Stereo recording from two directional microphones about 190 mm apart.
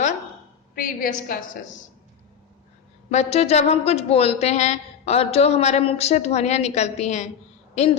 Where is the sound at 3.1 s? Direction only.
35° left (ahead or behind).